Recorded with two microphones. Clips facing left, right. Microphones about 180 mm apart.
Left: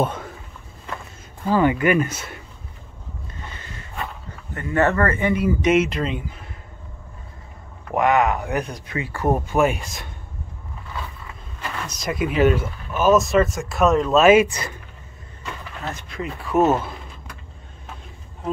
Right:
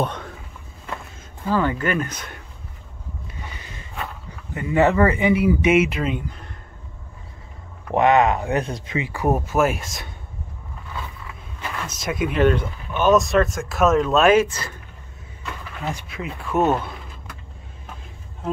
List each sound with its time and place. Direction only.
0.0 s a sound: 5° left (ahead or behind)
1.5 s speech: 15° left (ahead or behind)
3.3 s a sound: 10° right (ahead or behind)
4.6 s speech: 10° right (ahead or behind)
7.9 s speech: 25° right (ahead or behind); by 10.1 s centre (ahead or behind)
11.9 s speech: centre (ahead or behind)
14.4 s speech: 15° left (ahead or behind)
15.8 s speech: 10° right (ahead or behind)